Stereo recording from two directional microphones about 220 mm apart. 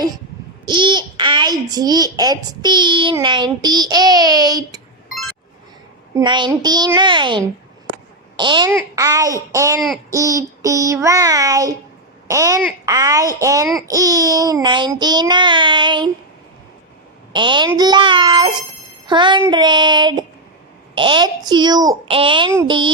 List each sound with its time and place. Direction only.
0.6 s child singing: 20° right (ahead or behind)
2.1 s a child's voice: 20° right (ahead or behind)
6.1 s child singing: 20° right (ahead or behind)
8.4 s a child's voice: 20° right (ahead or behind)
13.8 s child singing: 15° right (ahead or behind)
17.3 s child singing: 20° right (ahead or behind)